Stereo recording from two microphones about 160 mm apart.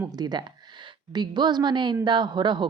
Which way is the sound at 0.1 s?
25° right (ahead or behind).